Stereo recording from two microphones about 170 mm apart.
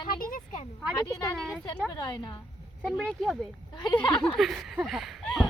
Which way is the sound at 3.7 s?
25° left (ahead or behind).